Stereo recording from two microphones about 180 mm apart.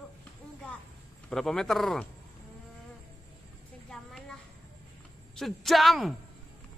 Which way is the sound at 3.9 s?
5° left (ahead or behind).